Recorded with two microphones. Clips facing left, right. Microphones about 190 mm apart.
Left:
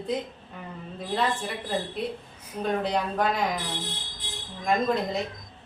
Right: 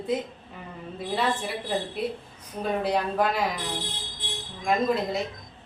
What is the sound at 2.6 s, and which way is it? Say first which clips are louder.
Speech: right 1 dB; 5° right (ahead or behind).